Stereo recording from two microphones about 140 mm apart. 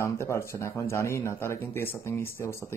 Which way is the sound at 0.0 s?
20° left (ahead or behind).